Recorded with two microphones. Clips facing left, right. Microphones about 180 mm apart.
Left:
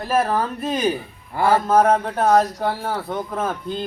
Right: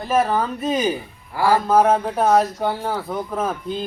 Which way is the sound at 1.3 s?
25° left (ahead or behind).